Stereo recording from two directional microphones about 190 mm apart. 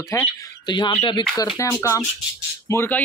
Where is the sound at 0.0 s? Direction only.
15° left (ahead or behind).